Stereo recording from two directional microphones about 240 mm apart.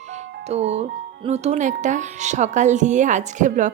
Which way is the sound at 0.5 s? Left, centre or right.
Right.